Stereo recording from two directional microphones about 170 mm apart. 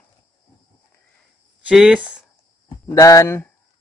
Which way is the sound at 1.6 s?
5° right (ahead or behind).